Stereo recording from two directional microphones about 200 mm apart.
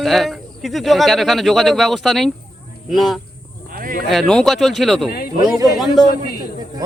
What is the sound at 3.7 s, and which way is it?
Speech, 45° right (ahead or behind).